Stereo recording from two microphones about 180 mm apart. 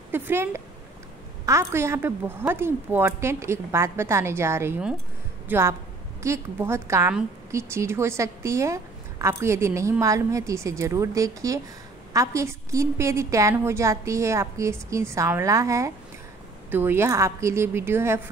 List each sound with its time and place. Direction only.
0.1 s a woman's voice: 10° right (ahead or behind)